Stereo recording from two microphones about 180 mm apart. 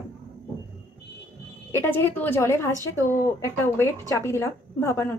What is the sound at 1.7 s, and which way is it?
A woman's voice, 10° left (ahead or behind).